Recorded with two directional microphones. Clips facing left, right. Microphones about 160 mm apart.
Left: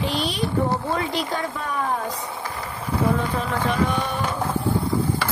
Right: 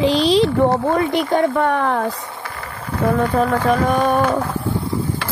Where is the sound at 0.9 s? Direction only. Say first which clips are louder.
Right 8 dB; 55° right (ahead or behind); by 2.1 s 75° right (ahead or behind).